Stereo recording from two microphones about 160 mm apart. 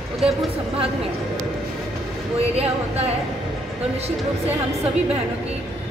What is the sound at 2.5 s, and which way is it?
Speech, 40° right (ahead or behind).